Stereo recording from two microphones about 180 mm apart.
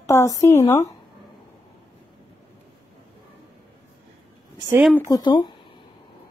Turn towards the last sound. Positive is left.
turn(degrees=25)  # may be behind; listen again after turning